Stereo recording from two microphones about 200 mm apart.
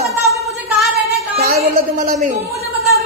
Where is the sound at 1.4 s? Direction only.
50° right (ahead or behind).